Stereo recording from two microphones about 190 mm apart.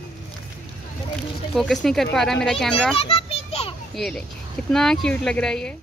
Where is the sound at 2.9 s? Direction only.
30° left (ahead or behind).